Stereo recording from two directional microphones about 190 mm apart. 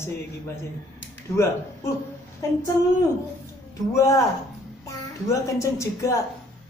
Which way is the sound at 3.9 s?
15° left (ahead or behind).